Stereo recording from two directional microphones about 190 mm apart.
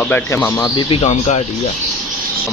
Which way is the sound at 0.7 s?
30° left (ahead or behind).